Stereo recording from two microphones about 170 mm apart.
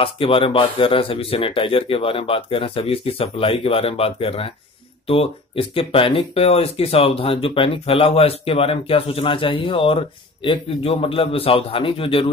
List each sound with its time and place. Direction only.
0.0 s speech: 30° left (ahead or behind)